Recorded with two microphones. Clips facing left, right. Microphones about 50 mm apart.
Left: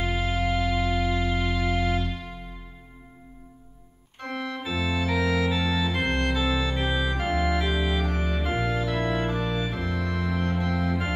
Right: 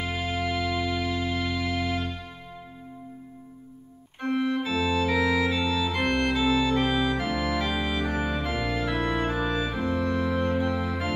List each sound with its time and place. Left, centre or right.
0.0 s music: centre
1.7 s music: left
4.2 s organ: centre
4.6 s organ: centre
7.7 s organ: centre
8.5 s organ: centre
8.8 s music: centre
9.8 s organ: centre